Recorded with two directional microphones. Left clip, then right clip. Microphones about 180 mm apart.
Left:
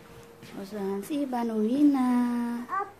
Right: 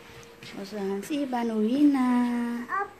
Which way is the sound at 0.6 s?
5° right (ahead or behind).